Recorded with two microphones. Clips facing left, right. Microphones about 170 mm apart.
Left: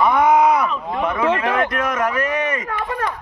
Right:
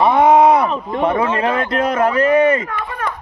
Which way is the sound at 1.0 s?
30° right (ahead or behind).